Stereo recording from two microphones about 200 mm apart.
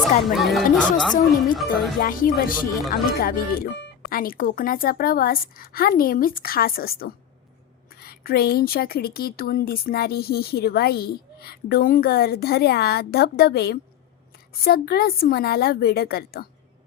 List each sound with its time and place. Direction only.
0.0 s speech: centre (ahead or behind)
2.0 s a woman's voice: 45° left (ahead or behind)